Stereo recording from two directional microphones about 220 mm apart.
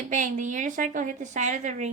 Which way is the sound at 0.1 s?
35° right (ahead or behind).